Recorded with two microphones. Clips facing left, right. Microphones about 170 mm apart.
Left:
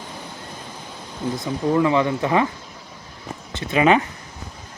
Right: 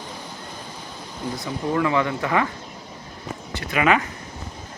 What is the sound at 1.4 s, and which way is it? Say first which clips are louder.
Speech: left 4 dB; 20° left (ahead or behind).